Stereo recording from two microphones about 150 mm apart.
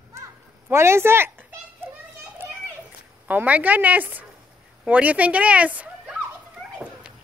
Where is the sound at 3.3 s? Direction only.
10° right (ahead or behind).